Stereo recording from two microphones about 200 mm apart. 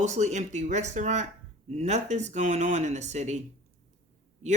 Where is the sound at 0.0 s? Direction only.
35° right (ahead or behind).